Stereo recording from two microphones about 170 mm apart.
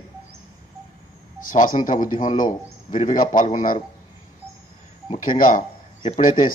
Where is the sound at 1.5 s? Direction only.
50° left (ahead or behind).